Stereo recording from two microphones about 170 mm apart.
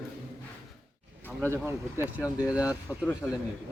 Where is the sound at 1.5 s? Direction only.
15° right (ahead or behind).